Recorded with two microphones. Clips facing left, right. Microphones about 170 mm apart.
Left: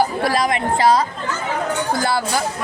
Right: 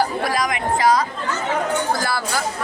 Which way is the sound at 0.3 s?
30° left (ahead or behind).